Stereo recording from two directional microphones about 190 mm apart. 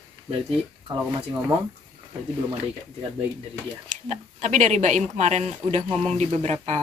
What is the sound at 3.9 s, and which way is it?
Speech, 40° right (ahead or behind).